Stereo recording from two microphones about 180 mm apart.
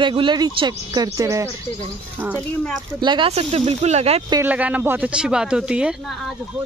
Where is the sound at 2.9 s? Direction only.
25° right (ahead or behind).